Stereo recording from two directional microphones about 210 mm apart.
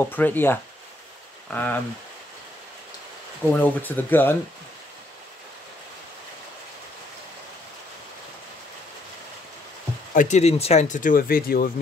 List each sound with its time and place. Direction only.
0.0 s speech: 10° left (ahead or behind)
3.5 s speech: 10° left (ahead or behind)
10.1 s speech: 35° left (ahead or behind)